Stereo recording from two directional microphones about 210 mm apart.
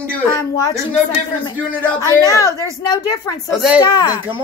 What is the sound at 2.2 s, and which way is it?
Speech, 15° left (ahead or behind).